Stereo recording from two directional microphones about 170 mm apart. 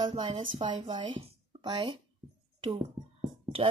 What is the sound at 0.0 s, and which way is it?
Speech, 25° right (ahead or behind).